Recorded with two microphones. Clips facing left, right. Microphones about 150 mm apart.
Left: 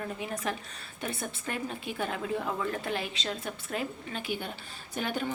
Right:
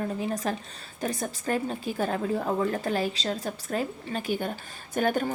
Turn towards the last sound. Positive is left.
turn(degrees=-45)  # may be behind; listen again after turning